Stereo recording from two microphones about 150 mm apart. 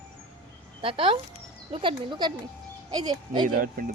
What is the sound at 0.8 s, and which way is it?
Speech, 35° right (ahead or behind).